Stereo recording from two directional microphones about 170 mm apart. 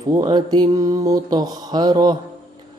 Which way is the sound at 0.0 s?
25° right (ahead or behind).